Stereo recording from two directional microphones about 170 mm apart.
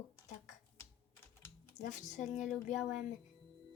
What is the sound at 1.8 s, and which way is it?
Speech, 45° left (ahead or behind).